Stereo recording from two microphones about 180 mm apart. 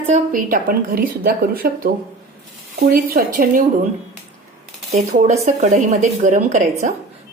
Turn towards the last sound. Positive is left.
turn(degrees=-40)  # may be behind; listen again after turning